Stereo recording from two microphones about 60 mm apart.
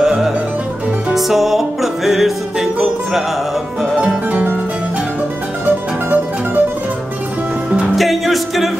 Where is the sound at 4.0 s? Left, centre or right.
Right.